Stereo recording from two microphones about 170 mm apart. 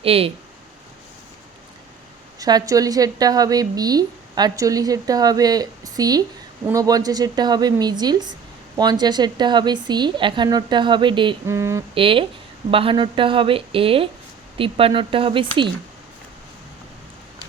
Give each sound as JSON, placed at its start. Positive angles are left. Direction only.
{"t": 0.0, "sound": "speech", "side_deg": -35}
{"t": 2.4, "sound": "a woman's voice", "side_deg": -20}
{"t": 11.4, "sound": "mantra", "side_deg": -15}
{"t": 11.9, "sound": "speech", "side_deg": -30}